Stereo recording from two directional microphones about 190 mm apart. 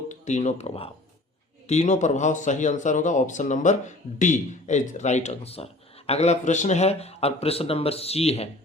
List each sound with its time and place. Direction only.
0.1 s speech: 40° left (ahead or behind)